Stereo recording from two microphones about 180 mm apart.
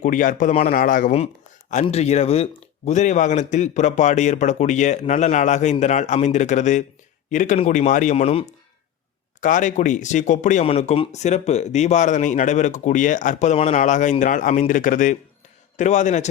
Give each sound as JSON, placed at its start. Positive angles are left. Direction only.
{"t": 0.0, "sound": "speech", "side_deg": 45}